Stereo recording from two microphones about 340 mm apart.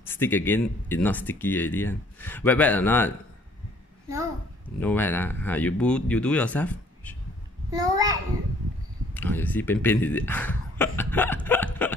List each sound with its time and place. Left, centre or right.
0.0 s speech: centre
4.7 s speech: centre
7.7 s a child's voice: centre
9.1 s speech: centre